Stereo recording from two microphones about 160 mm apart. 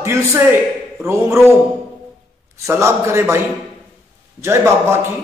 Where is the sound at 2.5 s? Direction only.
15° right (ahead or behind).